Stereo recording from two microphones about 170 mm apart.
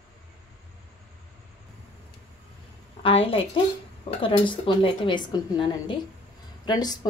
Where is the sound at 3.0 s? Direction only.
35° left (ahead or behind).